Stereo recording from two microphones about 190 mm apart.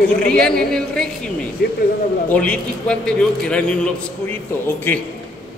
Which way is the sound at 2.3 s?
5° left (ahead or behind).